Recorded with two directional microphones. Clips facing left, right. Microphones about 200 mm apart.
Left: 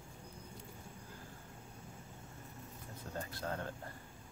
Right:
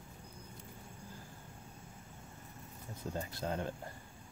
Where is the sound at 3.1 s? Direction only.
15° right (ahead or behind).